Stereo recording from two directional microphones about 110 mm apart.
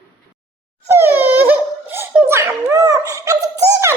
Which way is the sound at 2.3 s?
25° right (ahead or behind).